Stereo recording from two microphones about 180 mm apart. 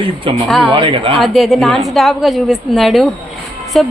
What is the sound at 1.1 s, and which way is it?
A woman's voice, centre (ahead or behind).